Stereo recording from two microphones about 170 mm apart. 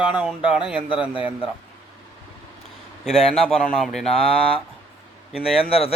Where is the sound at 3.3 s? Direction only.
5° left (ahead or behind).